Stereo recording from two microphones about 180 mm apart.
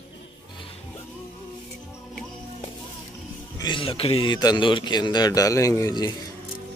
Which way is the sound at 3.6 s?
30° left (ahead or behind).